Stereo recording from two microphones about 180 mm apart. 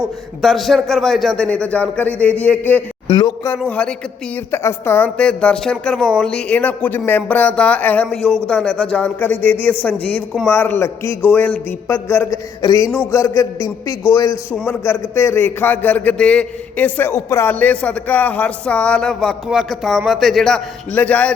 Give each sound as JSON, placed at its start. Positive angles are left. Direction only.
{"t": 0.4, "sound": "a man's voice", "side_deg": 0}
{"t": 3.1, "sound": "speech", "side_deg": 25}
{"t": 3.6, "sound": "a man's voice", "side_deg": 5}